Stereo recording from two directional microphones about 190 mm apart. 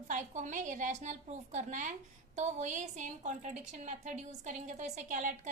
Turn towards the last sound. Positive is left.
turn(degrees=-40)  # may be behind; listen again after turning